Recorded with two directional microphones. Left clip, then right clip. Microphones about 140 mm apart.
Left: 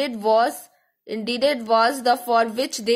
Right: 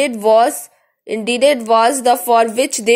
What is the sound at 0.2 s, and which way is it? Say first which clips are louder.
A woman's voice: right 6 dB; 15° right (ahead or behind).